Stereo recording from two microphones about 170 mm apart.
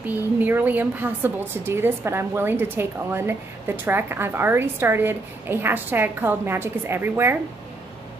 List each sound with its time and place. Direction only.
0.4 s speech: 10° right (ahead or behind)